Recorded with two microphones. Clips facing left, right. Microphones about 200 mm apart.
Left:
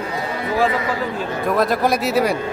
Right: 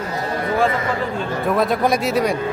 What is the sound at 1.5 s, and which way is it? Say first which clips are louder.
Speech: even; centre (ahead or behind).